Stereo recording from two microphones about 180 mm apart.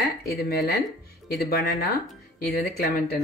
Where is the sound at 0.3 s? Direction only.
60° left (ahead or behind).